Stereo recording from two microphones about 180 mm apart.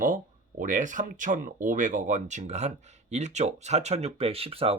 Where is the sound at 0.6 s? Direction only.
45° right (ahead or behind).